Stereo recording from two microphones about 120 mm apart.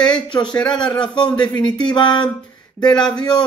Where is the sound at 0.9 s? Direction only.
40° left (ahead or behind).